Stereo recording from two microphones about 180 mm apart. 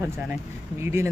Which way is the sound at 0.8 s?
15° right (ahead or behind).